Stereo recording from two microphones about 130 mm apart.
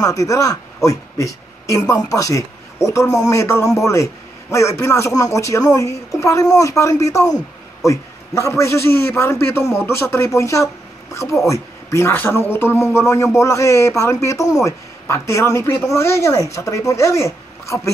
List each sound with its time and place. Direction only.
0.0 s a man's voice: 25° left (ahead or behind)